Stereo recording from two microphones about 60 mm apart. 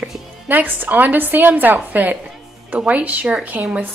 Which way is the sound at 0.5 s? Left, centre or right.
Right.